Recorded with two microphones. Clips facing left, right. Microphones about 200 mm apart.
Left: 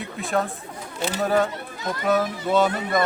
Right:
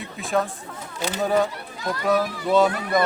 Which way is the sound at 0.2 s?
Centre (ahead or behind).